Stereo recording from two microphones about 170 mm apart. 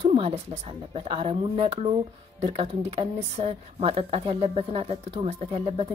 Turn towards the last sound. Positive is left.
turn(degrees=-35)  # may be behind; listen again after turning